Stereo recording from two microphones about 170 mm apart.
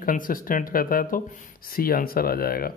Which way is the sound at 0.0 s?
55° left (ahead or behind).